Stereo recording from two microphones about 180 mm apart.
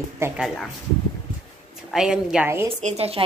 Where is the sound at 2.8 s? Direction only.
35° right (ahead or behind).